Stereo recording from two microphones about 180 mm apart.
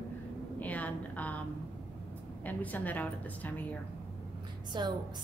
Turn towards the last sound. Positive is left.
turn(degrees=-25)  # may be behind; listen again after turning